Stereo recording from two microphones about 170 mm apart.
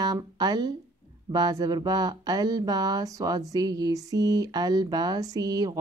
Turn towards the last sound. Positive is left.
turn(degrees=-20)  # may be behind; listen again after turning